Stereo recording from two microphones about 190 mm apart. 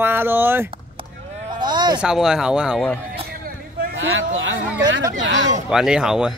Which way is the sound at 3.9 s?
90° right.